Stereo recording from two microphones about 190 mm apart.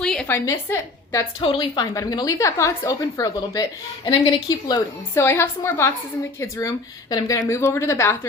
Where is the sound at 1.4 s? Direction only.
25° left (ahead or behind).